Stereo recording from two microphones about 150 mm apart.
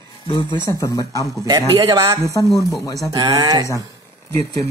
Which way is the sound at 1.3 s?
25° right (ahead or behind).